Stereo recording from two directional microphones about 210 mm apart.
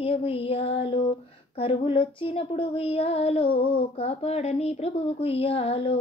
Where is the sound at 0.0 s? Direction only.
25° left (ahead or behind).